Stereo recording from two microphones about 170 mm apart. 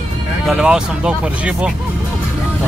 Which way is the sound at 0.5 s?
5° right (ahead or behind).